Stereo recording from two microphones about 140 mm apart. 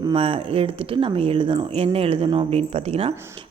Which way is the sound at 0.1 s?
40° right (ahead or behind).